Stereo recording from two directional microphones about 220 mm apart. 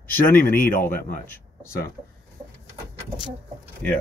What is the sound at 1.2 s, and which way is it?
Speech, 10° left (ahead or behind).